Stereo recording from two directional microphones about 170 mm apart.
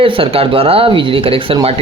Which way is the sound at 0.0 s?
30° right (ahead or behind).